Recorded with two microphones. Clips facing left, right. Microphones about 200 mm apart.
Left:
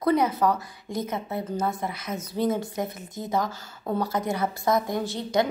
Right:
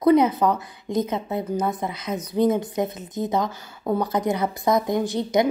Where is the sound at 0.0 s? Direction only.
20° right (ahead or behind).